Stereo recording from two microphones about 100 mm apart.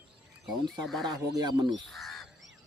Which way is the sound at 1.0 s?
45° right (ahead or behind).